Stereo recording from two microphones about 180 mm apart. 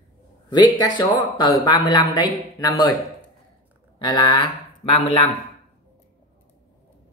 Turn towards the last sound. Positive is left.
turn(degrees=30)  # may be behind; listen again after turning